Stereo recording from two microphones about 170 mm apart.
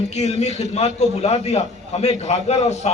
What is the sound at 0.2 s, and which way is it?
A man's voice, 40° left (ahead or behind).